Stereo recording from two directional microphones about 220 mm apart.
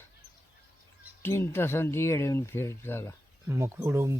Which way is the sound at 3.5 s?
10° right (ahead or behind).